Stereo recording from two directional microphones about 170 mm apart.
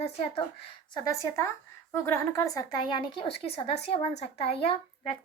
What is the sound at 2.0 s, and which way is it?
Speech, 15° left (ahead or behind).